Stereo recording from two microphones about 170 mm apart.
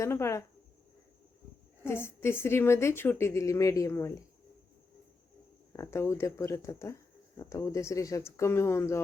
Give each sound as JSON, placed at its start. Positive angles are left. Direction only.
{"t": 0.0, "sound": "a woman's voice", "side_deg": 15}
{"t": 1.8, "sound": "a woman's voice", "side_deg": 15}
{"t": 5.7, "sound": "a woman's voice", "side_deg": 15}